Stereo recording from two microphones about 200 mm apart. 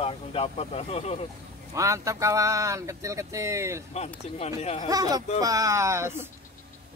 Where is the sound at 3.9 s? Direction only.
35° left (ahead or behind).